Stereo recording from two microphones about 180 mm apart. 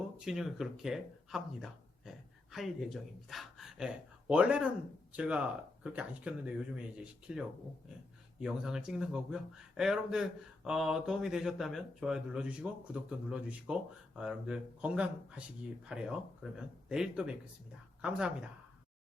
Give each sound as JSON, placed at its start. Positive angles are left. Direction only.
{"t": 0.3, "sound": "speech", "side_deg": 0}